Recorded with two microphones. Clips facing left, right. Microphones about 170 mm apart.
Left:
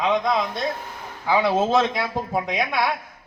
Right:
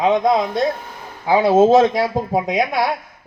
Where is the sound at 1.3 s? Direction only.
45° right (ahead or behind).